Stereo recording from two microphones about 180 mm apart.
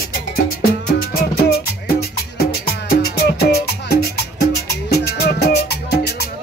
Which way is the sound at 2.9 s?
60° left (ahead or behind).